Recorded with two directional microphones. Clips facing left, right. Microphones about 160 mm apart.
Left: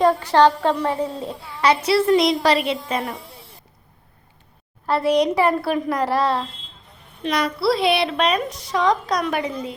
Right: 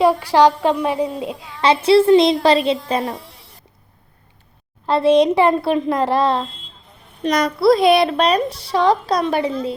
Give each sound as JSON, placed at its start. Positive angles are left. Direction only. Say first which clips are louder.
{"t": 0.0, "sound": "a woman's voice", "louder": "right 2 dB", "side_deg": -10}
{"t": 4.9, "sound": "a woman's voice", "louder": "right 5 dB", "side_deg": -25}
{"t": 7.2, "sound": "a woman's voice", "louder": "right 5 dB", "side_deg": -40}